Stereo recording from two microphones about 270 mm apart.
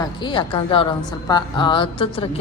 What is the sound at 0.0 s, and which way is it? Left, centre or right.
Speech, centre.